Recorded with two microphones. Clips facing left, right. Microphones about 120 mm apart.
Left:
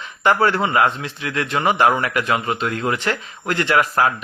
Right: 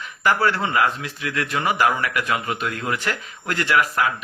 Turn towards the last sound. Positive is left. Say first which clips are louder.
# left 3 dB
turn(degrees=30)  # may be behind; listen again after turning